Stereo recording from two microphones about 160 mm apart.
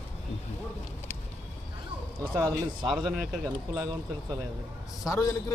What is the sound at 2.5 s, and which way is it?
Speech, 25° right (ahead or behind).